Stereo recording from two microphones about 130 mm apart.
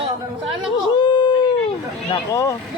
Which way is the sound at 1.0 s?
35° left (ahead or behind).